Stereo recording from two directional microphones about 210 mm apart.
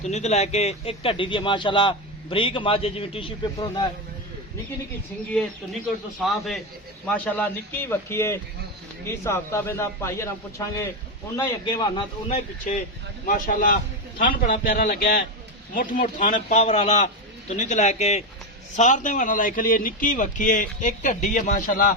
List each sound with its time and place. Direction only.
0.0 s speech: 30° left (ahead or behind)
6.1 s a man's voice: centre (ahead or behind); by 12.0 s 20° left (ahead or behind)
12.3 s a man's voice: 40° left (ahead or behind)